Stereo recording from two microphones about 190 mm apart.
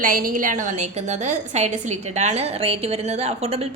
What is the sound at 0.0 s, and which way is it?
A woman's voice, 45° right (ahead or behind).